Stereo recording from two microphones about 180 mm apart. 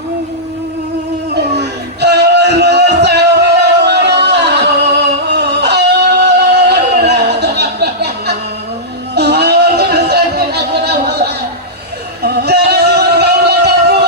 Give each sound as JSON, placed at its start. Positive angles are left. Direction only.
{"t": 1.4, "sound": "music", "side_deg": -70}
{"t": 9.1, "sound": "a sound", "side_deg": -65}
{"t": 12.2, "sound": "music", "side_deg": -65}